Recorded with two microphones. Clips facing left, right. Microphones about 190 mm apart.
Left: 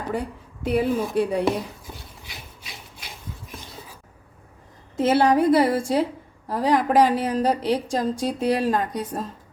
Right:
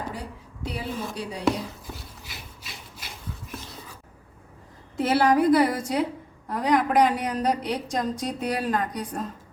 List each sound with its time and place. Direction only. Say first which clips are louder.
0.1 s speech: left 9 dB; 55° left (ahead or behind)
2.3 s rub: left 2 dB; centre (ahead or behind)
4.9 s a woman's voice: left 2 dB; 20° left (ahead or behind)